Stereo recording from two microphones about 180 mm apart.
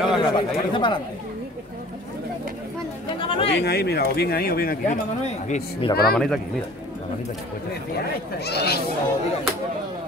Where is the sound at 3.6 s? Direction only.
65° left (ahead or behind).